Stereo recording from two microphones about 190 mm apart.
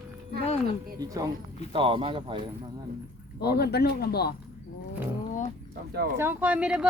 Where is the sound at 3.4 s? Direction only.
55° left (ahead or behind).